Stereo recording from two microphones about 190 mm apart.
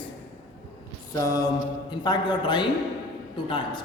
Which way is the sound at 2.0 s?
25° left (ahead or behind).